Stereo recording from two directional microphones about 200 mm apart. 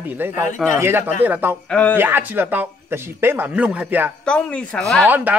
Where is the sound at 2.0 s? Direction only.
10° right (ahead or behind).